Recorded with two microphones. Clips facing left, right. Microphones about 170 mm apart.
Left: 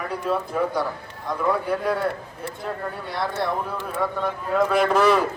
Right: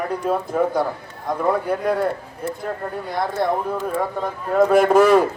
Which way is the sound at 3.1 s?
50° right (ahead or behind).